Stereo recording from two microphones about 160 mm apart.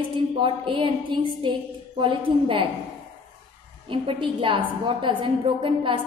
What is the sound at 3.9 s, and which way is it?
A woman's voice, 35° right (ahead or behind).